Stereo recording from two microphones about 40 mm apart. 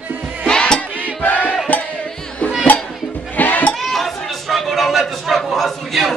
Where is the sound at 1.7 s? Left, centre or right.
Left.